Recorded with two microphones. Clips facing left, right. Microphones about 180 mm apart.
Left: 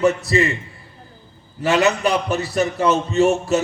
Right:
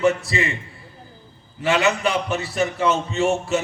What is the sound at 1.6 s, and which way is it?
A man's voice, 40° left (ahead or behind).